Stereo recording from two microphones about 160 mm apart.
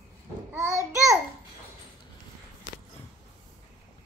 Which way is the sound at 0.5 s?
20° right (ahead or behind).